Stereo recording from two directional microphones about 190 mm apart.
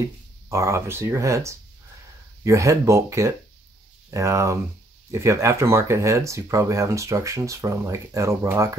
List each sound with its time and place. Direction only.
0.5 s speech: 15° right (ahead or behind)